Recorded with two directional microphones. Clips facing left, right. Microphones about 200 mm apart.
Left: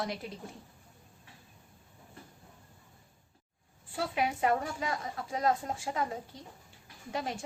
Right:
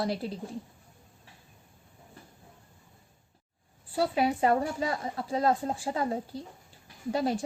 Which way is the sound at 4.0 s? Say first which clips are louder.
Right 5 dB; 35° right (ahead or behind).